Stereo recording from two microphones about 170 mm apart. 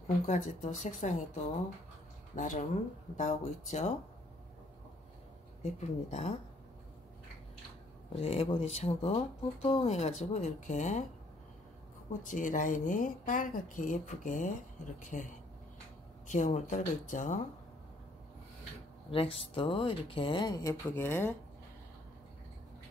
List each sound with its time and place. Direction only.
0.3 s speech: 45° left (ahead or behind)
5.6 s speech: 40° left (ahead or behind)
8.1 s speech: 35° left (ahead or behind)
12.1 s speech: 50° left (ahead or behind)
19.0 s speech: 35° left (ahead or behind)
20.9 s speech: 10° left (ahead or behind)